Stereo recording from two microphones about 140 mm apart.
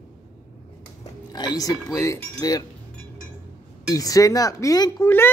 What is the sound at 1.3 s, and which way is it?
Speech, 30° left (ahead or behind).